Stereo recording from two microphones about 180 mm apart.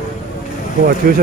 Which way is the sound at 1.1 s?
55° right (ahead or behind).